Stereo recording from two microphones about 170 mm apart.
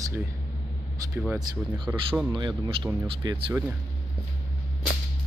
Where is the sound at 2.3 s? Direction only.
25° right (ahead or behind).